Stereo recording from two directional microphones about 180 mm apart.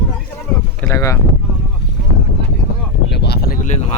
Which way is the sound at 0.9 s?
15° left (ahead or behind).